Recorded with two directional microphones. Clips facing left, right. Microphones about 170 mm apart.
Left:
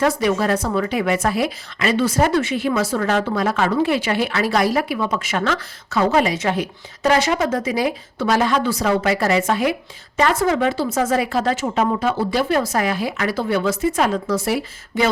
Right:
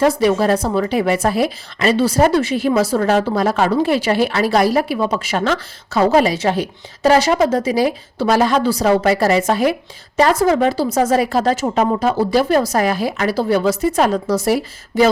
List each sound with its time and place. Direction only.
0.0 s speech: 30° right (ahead or behind)